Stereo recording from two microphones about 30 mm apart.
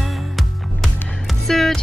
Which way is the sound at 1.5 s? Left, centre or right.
Centre.